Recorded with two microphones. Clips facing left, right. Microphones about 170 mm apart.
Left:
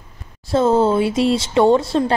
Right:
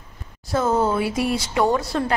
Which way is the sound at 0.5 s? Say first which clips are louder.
Left 5 dB; 30° left (ahead or behind).